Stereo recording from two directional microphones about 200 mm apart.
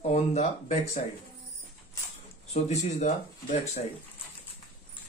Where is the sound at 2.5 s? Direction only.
30° left (ahead or behind).